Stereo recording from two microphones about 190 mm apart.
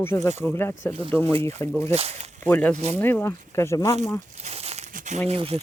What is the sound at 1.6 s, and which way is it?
Speech, 15° left (ahead or behind).